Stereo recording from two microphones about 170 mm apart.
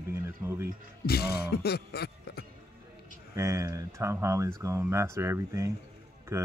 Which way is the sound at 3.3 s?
20° right (ahead or behind).